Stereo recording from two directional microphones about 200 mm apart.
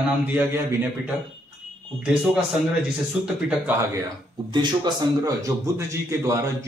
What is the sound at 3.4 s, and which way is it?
Speech, 10° right (ahead or behind).